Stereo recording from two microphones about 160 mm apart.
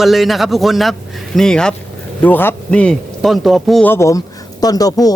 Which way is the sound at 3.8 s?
15° left (ahead or behind).